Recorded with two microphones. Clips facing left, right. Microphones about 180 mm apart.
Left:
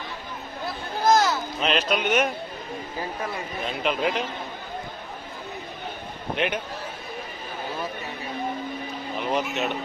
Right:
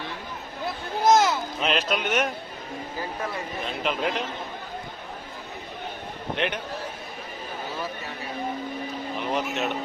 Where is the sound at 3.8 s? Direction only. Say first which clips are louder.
Left 2 dB; centre (ahead or behind).